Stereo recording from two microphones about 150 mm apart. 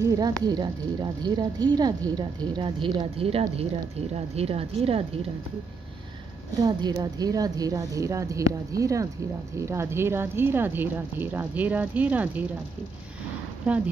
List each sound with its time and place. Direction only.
0.0 s speech: 25° right (ahead or behind); by 5.0 s 40° right (ahead or behind)
6.5 s speech: 25° right (ahead or behind); by 12.4 s 10° right (ahead or behind)